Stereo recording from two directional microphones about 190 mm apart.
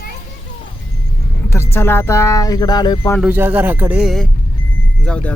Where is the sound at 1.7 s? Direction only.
10° left (ahead or behind).